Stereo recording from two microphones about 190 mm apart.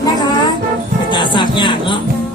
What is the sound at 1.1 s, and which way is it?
Speech, 25° left (ahead or behind).